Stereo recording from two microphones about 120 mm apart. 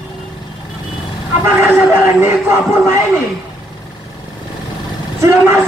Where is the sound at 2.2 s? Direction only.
20° right (ahead or behind).